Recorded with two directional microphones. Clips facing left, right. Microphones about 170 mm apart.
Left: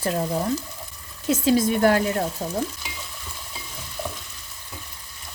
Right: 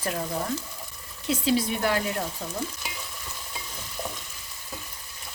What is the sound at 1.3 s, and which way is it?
Speech, 45° left (ahead or behind).